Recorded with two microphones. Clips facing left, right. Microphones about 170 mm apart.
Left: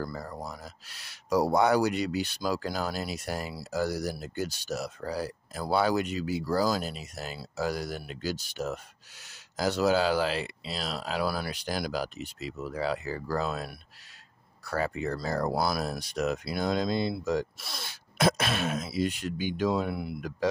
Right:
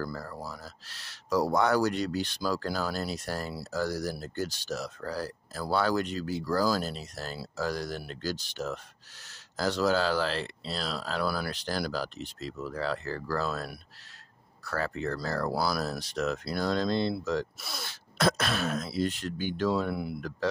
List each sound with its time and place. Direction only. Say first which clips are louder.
0.0 s speech: even; 15° left (ahead or behind); by 11.5 s centre (ahead or behind)
11.5 s speech: even; 10° left (ahead or behind)
13.4 s throat clearing: left 1 dB; centre (ahead or behind)
14.6 s speech: left 2 dB; 10° left (ahead or behind)
15.5 s throat clearing: left 1 dB; centre (ahead or behind)
16.0 s speech: left 1 dB; 10° left (ahead or behind)
17.6 s throat clearing: right 1 dB; centre (ahead or behind)
19.0 s speech: left 1 dB; 10° left (ahead or behind)
19.7 s throat clearing: even; centre (ahead or behind)
20.2 s speech: left 1 dB; 15° left (ahead or behind)